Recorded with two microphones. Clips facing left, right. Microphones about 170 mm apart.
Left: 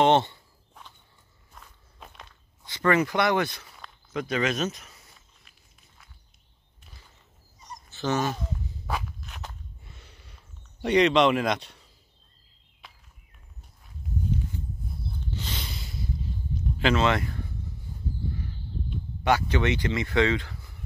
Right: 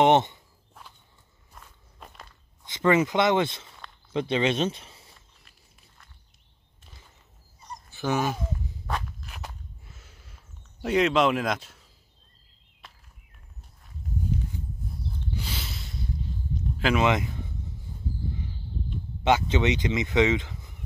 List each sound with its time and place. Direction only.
0.0 s walk: 15° right (ahead or behind)
1.5 s walk: centre (ahead or behind)
2.6 s speech: 20° right (ahead or behind)
5.1 s walk: centre (ahead or behind)
7.9 s speech: 10° right (ahead or behind)
8.8 s walk: centre (ahead or behind)
15.3 s a sound: 5° right (ahead or behind)
16.9 s speech: 15° right (ahead or behind)
19.2 s speech: 20° right (ahead or behind)